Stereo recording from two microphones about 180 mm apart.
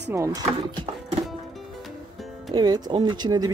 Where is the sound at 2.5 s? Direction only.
25° right (ahead or behind).